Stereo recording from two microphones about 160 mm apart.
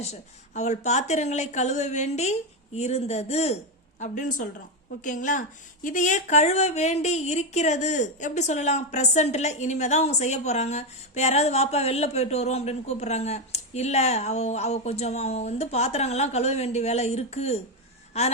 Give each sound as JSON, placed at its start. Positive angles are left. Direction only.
{"t": 0.0, "sound": "speech", "side_deg": 45}
{"t": 4.0, "sound": "speech", "side_deg": 50}